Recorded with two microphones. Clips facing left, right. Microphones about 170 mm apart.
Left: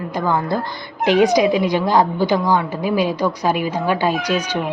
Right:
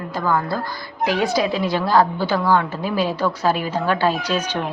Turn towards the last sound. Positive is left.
turn(degrees=10)  # may be behind; listen again after turning